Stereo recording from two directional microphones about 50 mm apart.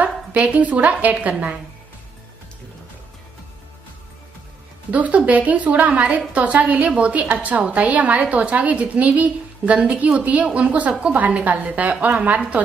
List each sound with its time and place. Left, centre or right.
0.0 s a woman's voice: right
4.9 s a woman's voice: right
11.1 s a woman's voice: right